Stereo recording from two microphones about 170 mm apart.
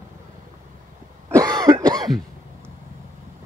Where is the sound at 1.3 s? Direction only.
25° right (ahead or behind).